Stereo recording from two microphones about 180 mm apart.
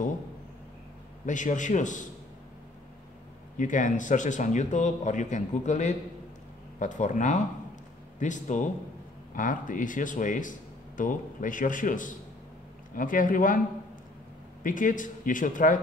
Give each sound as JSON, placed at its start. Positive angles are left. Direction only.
{"t": 1.2, "sound": "speech", "side_deg": 45}
{"t": 3.5, "sound": "speech", "side_deg": 45}
{"t": 14.6, "sound": "speech", "side_deg": 45}